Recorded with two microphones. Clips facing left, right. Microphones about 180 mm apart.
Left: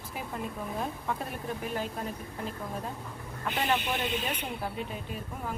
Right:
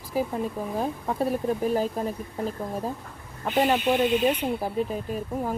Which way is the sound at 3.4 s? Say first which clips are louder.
Right 8 dB; 35° right (ahead or behind).